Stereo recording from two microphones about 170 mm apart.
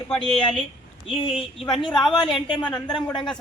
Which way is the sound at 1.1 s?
35° left (ahead or behind).